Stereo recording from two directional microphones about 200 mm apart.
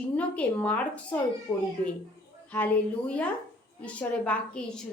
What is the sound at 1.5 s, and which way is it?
Speech, 20° left (ahead or behind).